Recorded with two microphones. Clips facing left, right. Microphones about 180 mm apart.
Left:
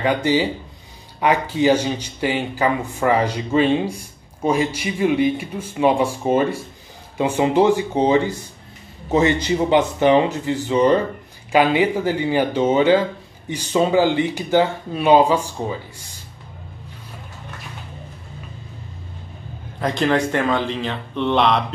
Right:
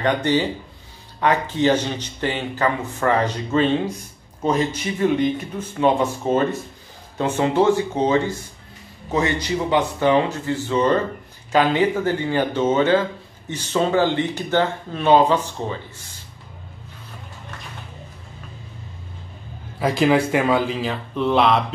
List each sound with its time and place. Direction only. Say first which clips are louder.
0.0 s speech: left 1 dB; 10° left (ahead or behind)
19.8 s speech: right 2 dB; 5° right (ahead or behind)